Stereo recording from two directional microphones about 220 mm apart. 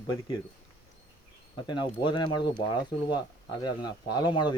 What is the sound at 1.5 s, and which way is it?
Speech, 20° left (ahead or behind).